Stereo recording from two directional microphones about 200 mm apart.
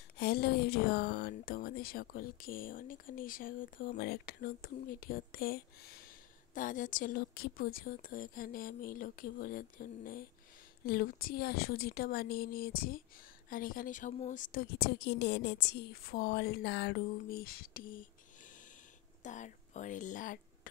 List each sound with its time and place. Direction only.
0.2 s speech: 55° left (ahead or behind)